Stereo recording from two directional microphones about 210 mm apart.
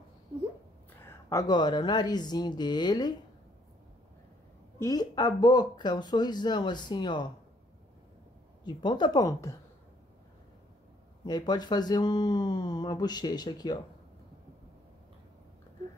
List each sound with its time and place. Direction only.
1.0 s speech: 15° left (ahead or behind)
4.7 s speech: 15° left (ahead or behind)
8.6 s speech: 20° left (ahead or behind)
11.2 s speech: 20° left (ahead or behind)